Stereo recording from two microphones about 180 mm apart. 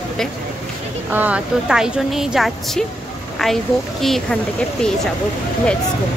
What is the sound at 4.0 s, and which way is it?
Speech, centre (ahead or behind).